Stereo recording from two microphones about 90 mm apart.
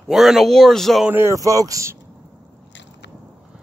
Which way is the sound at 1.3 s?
40° right (ahead or behind).